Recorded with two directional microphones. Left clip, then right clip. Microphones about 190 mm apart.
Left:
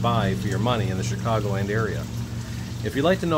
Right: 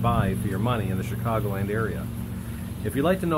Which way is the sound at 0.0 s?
15° left (ahead or behind).